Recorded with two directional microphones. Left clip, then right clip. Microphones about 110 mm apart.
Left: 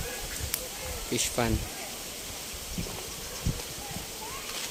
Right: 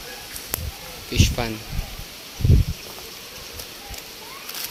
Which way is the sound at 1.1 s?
20° left (ahead or behind).